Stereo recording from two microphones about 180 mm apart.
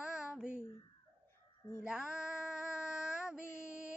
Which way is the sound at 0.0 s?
5° right (ahead or behind).